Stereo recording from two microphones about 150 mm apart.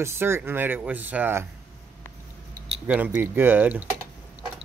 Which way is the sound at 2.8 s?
10° right (ahead or behind).